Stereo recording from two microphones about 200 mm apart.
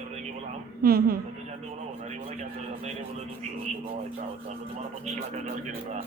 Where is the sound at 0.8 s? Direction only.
50° right (ahead or behind).